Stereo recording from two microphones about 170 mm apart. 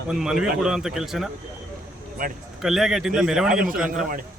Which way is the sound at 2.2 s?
55° right (ahead or behind).